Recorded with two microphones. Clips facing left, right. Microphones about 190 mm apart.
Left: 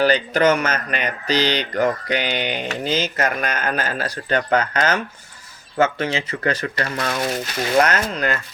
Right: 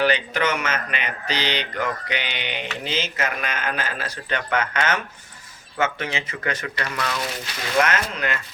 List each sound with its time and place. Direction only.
0.0 s speech: 40° left (ahead or behind)